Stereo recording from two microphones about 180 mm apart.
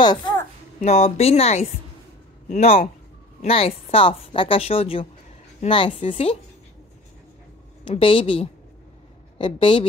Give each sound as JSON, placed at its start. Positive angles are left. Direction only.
{"t": 0.0, "sound": "a child's voice", "side_deg": 25}
{"t": 0.8, "sound": "a woman's voice", "side_deg": 40}
{"t": 7.8, "sound": "speech", "side_deg": 30}